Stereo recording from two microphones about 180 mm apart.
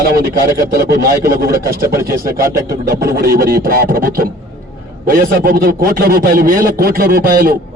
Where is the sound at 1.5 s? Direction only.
55° right (ahead or behind).